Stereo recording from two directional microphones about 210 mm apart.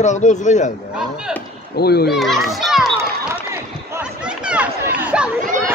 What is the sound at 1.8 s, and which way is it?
Speech, 50° left (ahead or behind).